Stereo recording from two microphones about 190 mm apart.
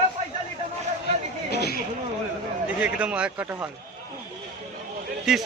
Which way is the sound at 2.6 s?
5° right (ahead or behind).